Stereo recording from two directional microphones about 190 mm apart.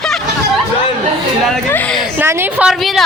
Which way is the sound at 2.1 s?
10° right (ahead or behind).